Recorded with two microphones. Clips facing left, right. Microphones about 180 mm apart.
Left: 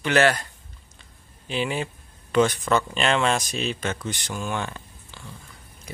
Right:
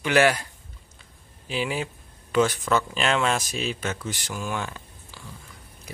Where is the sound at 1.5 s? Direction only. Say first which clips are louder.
Left 1 dB; 5° right (ahead or behind).